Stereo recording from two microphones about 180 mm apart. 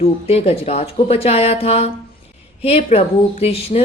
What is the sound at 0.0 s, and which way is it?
A woman's voice, 35° left (ahead or behind).